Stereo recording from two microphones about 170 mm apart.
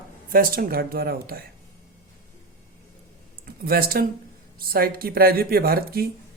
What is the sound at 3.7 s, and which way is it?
Speech, 60° right (ahead or behind).